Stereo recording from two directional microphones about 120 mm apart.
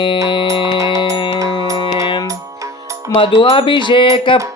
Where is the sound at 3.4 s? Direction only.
45° left (ahead or behind).